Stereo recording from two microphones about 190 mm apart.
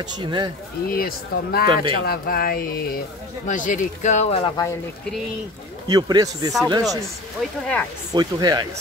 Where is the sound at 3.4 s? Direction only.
45° left (ahead or behind).